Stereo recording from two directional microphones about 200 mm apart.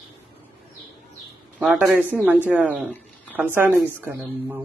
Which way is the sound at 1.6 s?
5° right (ahead or behind).